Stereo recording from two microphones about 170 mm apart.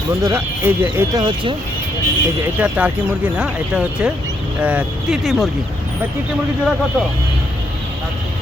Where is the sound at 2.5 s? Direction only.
5° right (ahead or behind).